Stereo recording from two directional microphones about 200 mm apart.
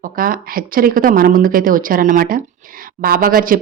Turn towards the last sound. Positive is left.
turn(degrees=-45)  # may be behind; listen again after turning